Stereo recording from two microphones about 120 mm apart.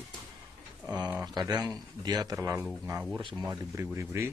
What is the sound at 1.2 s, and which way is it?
A man's voice, 35° right (ahead or behind).